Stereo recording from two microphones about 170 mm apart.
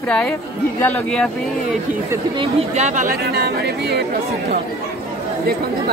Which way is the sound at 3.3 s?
75° right (ahead or behind).